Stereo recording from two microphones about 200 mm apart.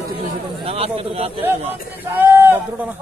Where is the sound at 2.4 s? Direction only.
10° right (ahead or behind).